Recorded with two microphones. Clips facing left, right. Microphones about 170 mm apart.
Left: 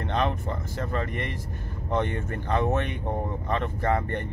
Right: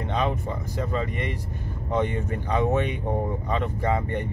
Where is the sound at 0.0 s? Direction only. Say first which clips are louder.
Right 1 dB; 10° right (ahead or behind).